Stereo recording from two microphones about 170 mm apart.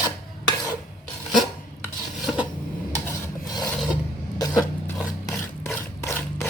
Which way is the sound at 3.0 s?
20° left (ahead or behind).